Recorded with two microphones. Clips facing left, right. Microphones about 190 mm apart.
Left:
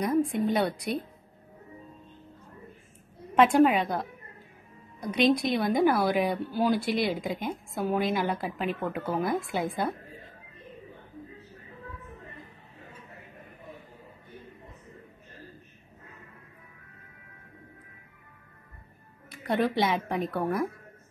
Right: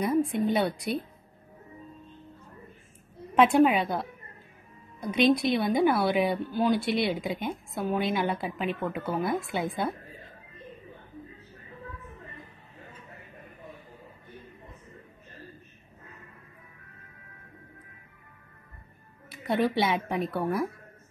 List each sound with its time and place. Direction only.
0.0 s a woman's voice: 5° right (ahead or behind)
3.6 s a woman's voice: 5° right (ahead or behind)
5.1 s a woman's voice: centre (ahead or behind)
19.4 s a woman's voice: centre (ahead or behind)